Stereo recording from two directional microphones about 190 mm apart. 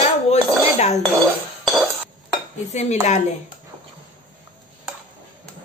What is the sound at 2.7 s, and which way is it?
Speech, 35° left (ahead or behind).